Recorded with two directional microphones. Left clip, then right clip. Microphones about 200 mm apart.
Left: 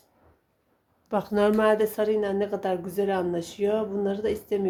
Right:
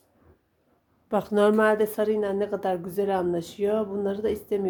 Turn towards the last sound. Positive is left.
turn(degrees=-15)  # may be behind; listen again after turning